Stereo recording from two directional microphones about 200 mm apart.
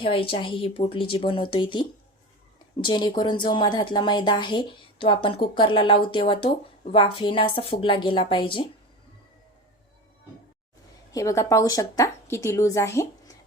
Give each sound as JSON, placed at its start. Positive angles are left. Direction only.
{"t": 0.0, "sound": "speech", "side_deg": 25}
{"t": 11.1, "sound": "a woman's voice", "side_deg": 15}